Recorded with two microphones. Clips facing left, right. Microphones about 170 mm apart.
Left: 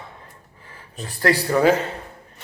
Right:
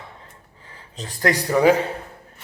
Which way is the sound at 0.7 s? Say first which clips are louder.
Left 1 dB; 20° right (ahead or behind).